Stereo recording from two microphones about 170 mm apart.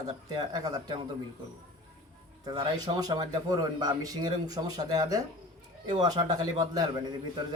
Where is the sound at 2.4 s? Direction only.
25° right (ahead or behind).